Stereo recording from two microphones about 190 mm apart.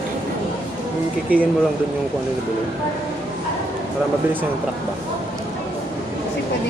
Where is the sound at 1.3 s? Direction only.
5° right (ahead or behind).